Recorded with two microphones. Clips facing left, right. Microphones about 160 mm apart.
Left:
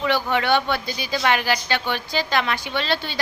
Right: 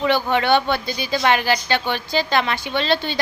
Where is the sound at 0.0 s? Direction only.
30° right (ahead or behind).